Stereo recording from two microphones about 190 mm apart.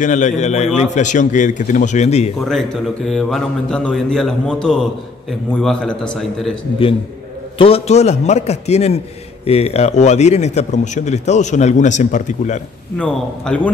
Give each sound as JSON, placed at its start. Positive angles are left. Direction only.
{"t": 0.0, "sound": "a man's voice", "side_deg": 40}
{"t": 2.4, "sound": "speech", "side_deg": 0}
{"t": 7.5, "sound": "a man's voice", "side_deg": 30}
{"t": 12.9, "sound": "speech", "side_deg": 5}